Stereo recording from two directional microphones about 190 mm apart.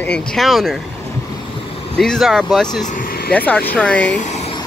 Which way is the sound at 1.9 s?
5° left (ahead or behind).